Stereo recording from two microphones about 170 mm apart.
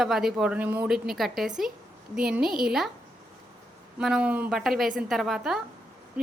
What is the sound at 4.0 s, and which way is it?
A woman's voice, 5° right (ahead or behind).